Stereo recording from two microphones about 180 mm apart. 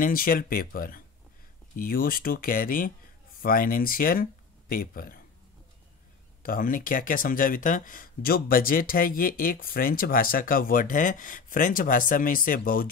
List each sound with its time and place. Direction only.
0.0 s speech: 50° left (ahead or behind)
6.4 s speech: 50° left (ahead or behind)